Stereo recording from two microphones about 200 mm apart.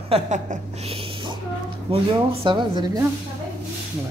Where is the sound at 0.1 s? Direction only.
35° right (ahead or behind).